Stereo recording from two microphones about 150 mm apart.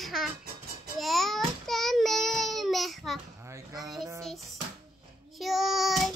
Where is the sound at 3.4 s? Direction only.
20° right (ahead or behind).